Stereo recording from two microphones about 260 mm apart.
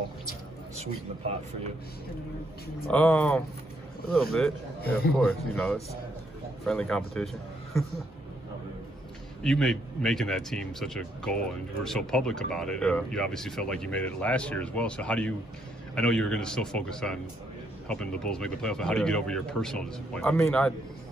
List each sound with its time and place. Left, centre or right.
0.7 s speech: right
2.9 s speech: centre
9.4 s speech: centre